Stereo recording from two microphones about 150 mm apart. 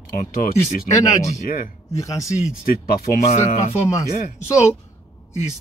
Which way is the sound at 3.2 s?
50° left (ahead or behind).